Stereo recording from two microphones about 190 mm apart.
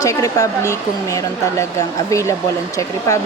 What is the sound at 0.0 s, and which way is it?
Speech, 15° left (ahead or behind).